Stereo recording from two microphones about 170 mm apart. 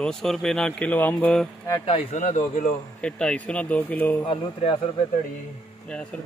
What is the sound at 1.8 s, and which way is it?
Speech, 40° left (ahead or behind).